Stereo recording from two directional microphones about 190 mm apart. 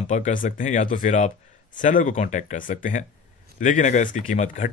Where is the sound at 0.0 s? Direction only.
40° left (ahead or behind).